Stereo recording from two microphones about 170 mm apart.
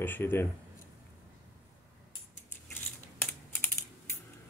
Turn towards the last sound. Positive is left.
turn(degrees=10)  # may be behind; listen again after turning